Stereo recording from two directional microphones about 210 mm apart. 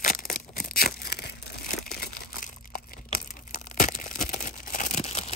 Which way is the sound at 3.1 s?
40° left (ahead or behind).